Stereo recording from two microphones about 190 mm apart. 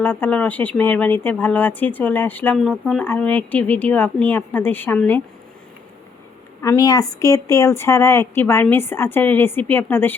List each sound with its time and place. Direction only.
0.0 s speech: 10° left (ahead or behind)
6.6 s speech: 15° left (ahead or behind)